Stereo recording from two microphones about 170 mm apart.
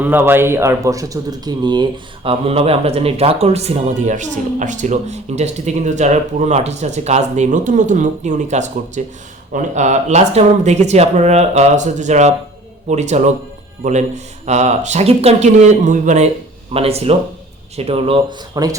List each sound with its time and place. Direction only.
0.0 s speech: 10° right (ahead or behind)